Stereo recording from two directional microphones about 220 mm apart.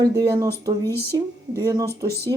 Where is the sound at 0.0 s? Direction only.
15° right (ahead or behind).